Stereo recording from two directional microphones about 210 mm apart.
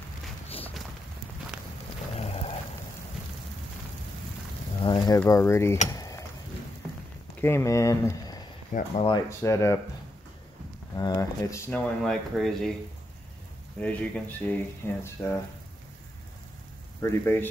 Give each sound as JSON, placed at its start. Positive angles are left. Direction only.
{"t": 2.1, "sound": "a sound", "side_deg": 30}
{"t": 4.8, "sound": "dishes", "side_deg": 20}
{"t": 5.9, "sound": "stir", "side_deg": 15}
{"t": 7.3, "sound": "speech", "side_deg": 10}
{"t": 8.7, "sound": "speech", "side_deg": 30}
{"t": 9.4, "sound": "speech", "side_deg": 15}
{"t": 11.0, "sound": "speech", "side_deg": 15}
{"t": 12.0, "sound": "speech", "side_deg": 0}
{"t": 13.7, "sound": "speech", "side_deg": 5}
{"t": 17.0, "sound": "speech", "side_deg": 10}